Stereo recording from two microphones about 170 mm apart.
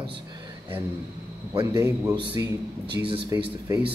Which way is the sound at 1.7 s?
15° right (ahead or behind).